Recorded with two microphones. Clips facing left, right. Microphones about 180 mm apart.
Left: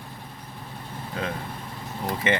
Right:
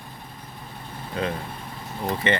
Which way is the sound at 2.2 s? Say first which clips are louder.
Even; 10° left (ahead or behind).